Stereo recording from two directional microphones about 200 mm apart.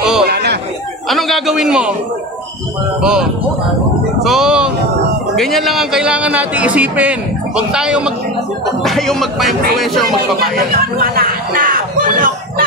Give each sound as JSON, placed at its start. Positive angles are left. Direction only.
{"t": 0.2, "sound": "chatter", "side_deg": -55}
{"t": 1.0, "sound": "speech", "side_deg": 0}
{"t": 3.0, "sound": "speech", "side_deg": -5}
{"t": 10.7, "sound": "a sound", "side_deg": -50}